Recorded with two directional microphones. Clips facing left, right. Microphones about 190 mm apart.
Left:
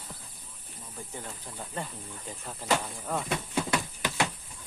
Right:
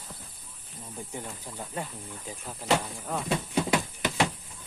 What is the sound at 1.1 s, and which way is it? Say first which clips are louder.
Speech: right 2 dB; 10° right (ahead or behind).